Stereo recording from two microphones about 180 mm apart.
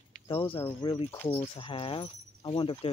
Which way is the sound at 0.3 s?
30° left (ahead or behind).